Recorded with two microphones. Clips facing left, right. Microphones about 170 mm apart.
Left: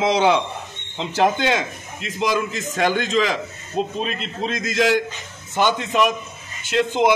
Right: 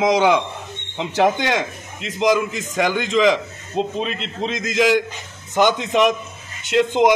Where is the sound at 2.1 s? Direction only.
15° right (ahead or behind).